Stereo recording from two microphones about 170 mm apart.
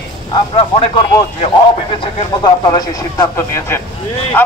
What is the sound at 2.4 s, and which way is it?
A man's voice, 25° left (ahead or behind).